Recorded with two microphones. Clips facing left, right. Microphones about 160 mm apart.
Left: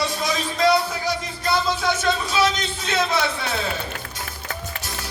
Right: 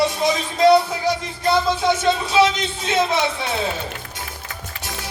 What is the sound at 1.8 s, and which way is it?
A man's voice, 25° right (ahead or behind).